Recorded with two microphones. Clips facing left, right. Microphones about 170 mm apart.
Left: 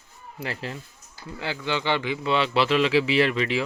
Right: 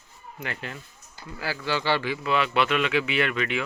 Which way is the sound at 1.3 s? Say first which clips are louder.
Even; 20° left (ahead or behind).